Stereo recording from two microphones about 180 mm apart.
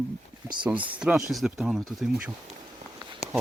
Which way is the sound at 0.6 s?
5° right (ahead or behind).